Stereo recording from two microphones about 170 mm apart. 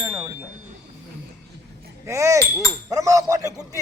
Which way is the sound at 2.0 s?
15° right (ahead or behind).